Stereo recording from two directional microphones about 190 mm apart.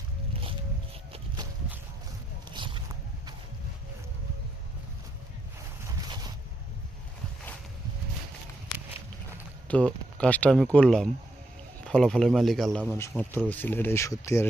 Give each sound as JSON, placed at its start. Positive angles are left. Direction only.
{"t": 2.5, "sound": "a sound", "side_deg": -25}
{"t": 9.6, "sound": "speech", "side_deg": 5}
{"t": 12.9, "sound": "speech", "side_deg": 10}